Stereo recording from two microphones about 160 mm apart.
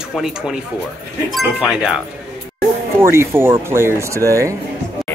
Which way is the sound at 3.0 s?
15° right (ahead or behind).